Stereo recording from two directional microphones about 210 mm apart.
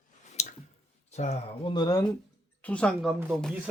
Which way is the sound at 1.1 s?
30° left (ahead or behind).